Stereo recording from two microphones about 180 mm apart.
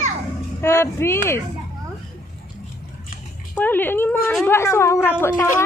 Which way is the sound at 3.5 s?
10° left (ahead or behind).